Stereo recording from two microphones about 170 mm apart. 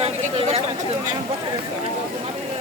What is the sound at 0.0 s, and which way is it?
Chatter, 35° right (ahead or behind).